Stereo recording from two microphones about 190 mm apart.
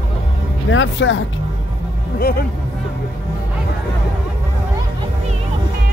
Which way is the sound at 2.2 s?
50° left (ahead or behind).